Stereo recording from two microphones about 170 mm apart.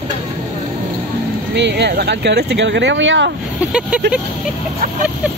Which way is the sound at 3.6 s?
5° right (ahead or behind).